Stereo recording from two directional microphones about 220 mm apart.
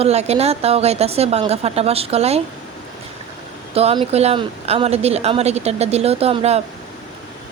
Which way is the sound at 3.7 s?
25° right (ahead or behind).